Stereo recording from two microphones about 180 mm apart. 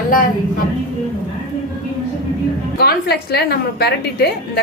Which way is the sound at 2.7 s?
60° left (ahead or behind).